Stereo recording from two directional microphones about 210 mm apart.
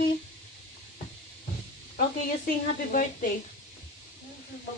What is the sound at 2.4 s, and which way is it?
Speech, 40° left (ahead or behind).